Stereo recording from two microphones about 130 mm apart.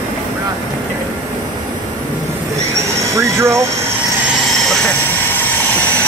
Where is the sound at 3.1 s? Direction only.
20° right (ahead or behind).